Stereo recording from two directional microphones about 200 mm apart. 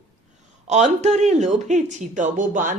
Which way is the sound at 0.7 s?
35° right (ahead or behind).